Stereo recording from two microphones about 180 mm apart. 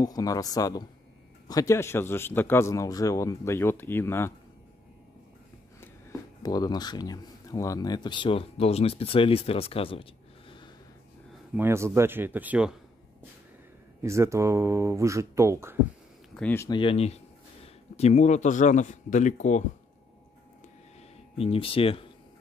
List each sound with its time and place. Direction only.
0.0 s a man's voice: 20° left (ahead or behind)
6.4 s speech: 20° left (ahead or behind)
11.5 s speech: 15° right (ahead or behind)
14.0 s speech: 15° right (ahead or behind)
16.3 s a man's voice: 10° left (ahead or behind)
16.7 s speech: 30° left (ahead or behind)
21.4 s speech: 30° left (ahead or behind)